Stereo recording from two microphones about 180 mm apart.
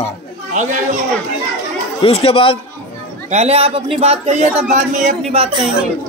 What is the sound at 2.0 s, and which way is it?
Speech, 30° left (ahead or behind).